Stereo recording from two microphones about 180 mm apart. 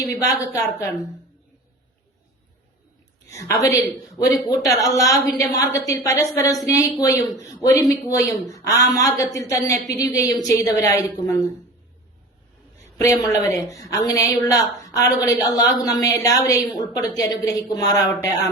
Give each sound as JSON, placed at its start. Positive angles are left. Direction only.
{"t": 0.1, "sound": "a woman's voice", "side_deg": 20}
{"t": 3.3, "sound": "a woman's voice", "side_deg": 20}
{"t": 13.0, "sound": "a woman's voice", "side_deg": 20}